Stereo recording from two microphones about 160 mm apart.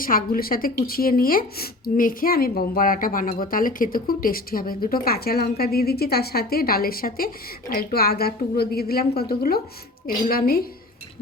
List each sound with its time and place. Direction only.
0.0 s a woman's voice: 65° left (ahead or behind)